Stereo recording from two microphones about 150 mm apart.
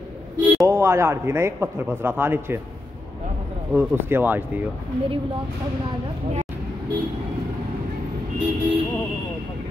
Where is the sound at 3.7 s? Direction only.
10° right (ahead or behind).